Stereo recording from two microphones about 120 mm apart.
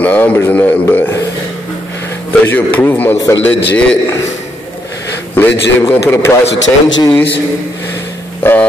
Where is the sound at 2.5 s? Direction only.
15° left (ahead or behind).